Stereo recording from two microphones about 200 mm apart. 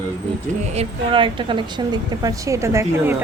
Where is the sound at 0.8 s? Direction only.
25° right (ahead or behind).